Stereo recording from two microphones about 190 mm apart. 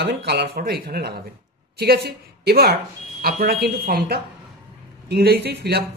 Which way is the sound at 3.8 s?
50° right (ahead or behind).